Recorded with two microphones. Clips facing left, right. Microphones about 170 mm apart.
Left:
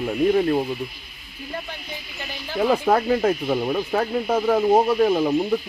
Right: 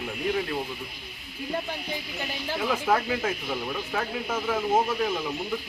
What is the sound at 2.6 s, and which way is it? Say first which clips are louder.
A man's voice: left 7 dB; 40° left (ahead or behind).